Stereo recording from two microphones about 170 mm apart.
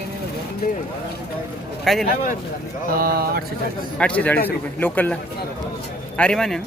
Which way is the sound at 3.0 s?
65° right (ahead or behind).